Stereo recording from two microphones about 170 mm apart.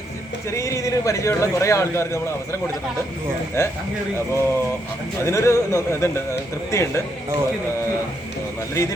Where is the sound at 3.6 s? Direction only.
15° left (ahead or behind).